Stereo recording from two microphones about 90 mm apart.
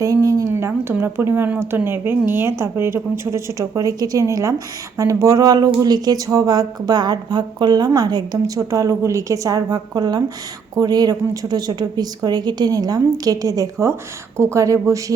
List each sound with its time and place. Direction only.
0.0 s a woman's voice: 40° right (ahead or behind)